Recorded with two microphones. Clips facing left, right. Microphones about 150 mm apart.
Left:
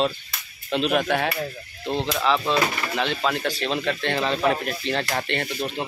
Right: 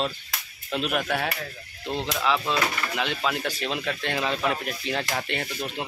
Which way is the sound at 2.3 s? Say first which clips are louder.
Left 4 dB; 20° left (ahead or behind).